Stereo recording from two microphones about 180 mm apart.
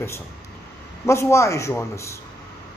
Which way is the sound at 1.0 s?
15° left (ahead or behind).